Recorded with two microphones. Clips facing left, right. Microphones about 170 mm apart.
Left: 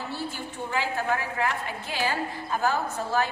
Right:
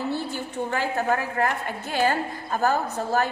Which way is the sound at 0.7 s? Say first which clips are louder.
Right 2 dB; 45° right (ahead or behind).